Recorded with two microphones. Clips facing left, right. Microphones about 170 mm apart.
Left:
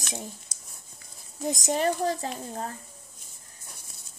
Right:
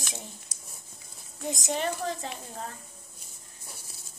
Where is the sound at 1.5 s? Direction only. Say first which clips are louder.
Left 4 dB; 40° left (ahead or behind).